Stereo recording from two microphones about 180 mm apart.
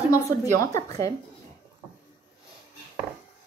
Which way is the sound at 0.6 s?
20° left (ahead or behind).